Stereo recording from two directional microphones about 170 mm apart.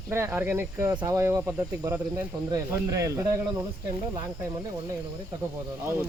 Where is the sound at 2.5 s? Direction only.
20° right (ahead or behind).